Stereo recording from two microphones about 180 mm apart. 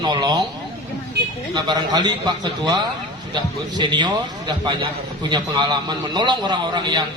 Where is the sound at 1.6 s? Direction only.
25° right (ahead or behind).